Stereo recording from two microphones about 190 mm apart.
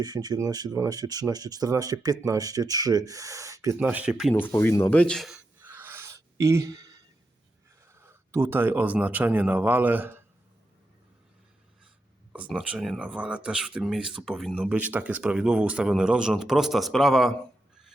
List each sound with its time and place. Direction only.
0.0 s speech: 20° right (ahead or behind); by 4.4 s 5° right (ahead or behind)
4.4 s speech: 10° left (ahead or behind)
5.5 s a sound: 10° right (ahead or behind)
7.9 s speech: 15° right (ahead or behind)
12.3 s speech: 5° right (ahead or behind)
14.7 s speech: 10° right (ahead or behind)